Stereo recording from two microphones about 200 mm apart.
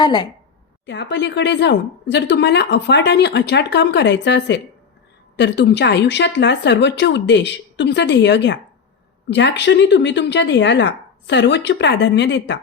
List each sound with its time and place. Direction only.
0.0 s a woman's voice: 25° left (ahead or behind)
0.9 s speech: 60° left (ahead or behind)